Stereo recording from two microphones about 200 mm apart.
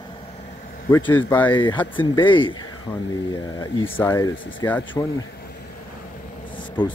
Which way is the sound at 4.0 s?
10° left (ahead or behind).